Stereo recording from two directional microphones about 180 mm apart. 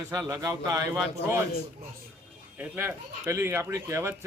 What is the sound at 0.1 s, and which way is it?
Speech, 15° right (ahead or behind).